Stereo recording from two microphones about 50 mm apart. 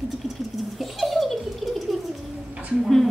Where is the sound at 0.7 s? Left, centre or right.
Centre.